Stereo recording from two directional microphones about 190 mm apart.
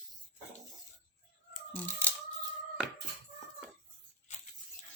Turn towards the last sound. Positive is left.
turn(degrees=40)  # may be behind; listen again after turning